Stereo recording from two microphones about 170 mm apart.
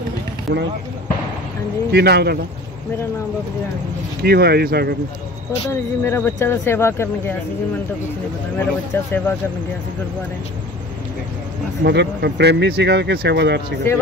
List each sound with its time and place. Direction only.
0.5 s speech: 80° right
1.9 s speech: 75° right (ahead or behind)
4.2 s speech: 65° right (ahead or behind)
5.7 s speech: 15° left (ahead or behind)
8.5 s speech: 10° left (ahead or behind)
11.8 s speech: 80° right